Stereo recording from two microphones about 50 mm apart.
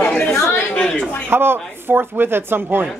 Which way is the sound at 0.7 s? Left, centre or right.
Centre.